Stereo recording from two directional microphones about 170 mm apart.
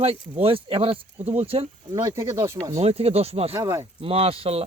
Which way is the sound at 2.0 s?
15° right (ahead or behind).